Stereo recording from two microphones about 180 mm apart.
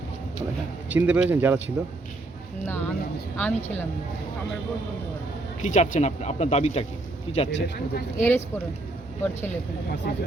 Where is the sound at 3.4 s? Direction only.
10° left (ahead or behind).